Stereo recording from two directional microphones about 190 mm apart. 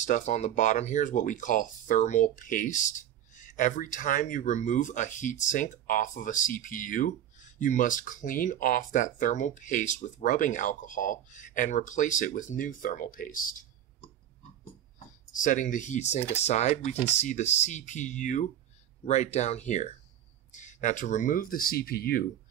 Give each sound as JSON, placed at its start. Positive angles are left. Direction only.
{"t": 0.0, "sound": "speech", "side_deg": 40}
{"t": 15.3, "sound": "speech", "side_deg": 40}